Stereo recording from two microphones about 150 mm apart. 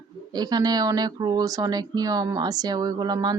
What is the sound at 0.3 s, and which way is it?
Speech, 25° right (ahead or behind).